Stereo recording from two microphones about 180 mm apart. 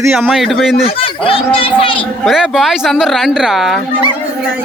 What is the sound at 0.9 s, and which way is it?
Speech, 30° left (ahead or behind).